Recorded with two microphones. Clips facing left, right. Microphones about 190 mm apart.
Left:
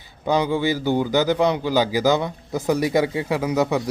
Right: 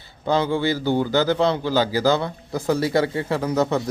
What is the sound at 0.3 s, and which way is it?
Speech, 15° left (ahead or behind).